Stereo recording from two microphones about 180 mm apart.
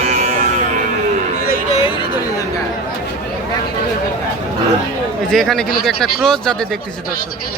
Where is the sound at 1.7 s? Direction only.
35° left (ahead or behind).